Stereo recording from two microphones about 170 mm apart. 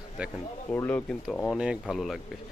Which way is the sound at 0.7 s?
10° left (ahead or behind).